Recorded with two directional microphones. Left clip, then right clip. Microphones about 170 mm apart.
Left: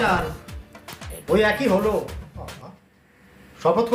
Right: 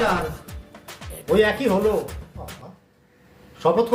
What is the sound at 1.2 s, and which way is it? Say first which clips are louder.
Speech: even; 15° right (ahead or behind).